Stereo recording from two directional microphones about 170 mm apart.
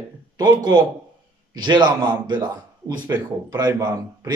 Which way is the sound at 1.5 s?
25° right (ahead or behind).